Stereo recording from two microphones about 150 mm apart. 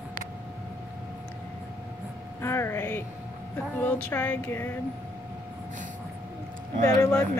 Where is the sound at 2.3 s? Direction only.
15° left (ahead or behind).